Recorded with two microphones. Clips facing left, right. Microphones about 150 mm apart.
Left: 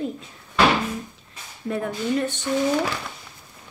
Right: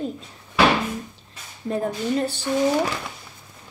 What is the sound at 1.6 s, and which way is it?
Speech, 35° right (ahead or behind).